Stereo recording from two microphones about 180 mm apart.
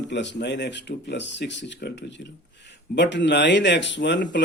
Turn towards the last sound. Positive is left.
turn(degrees=75)  # may be behind; listen again after turning